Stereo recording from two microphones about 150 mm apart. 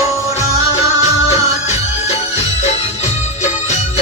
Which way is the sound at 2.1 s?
45° left (ahead or behind).